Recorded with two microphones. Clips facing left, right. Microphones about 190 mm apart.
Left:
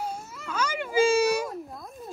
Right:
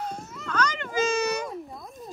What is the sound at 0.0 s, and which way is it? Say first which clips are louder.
Baby cry: even; 5° left (ahead or behind).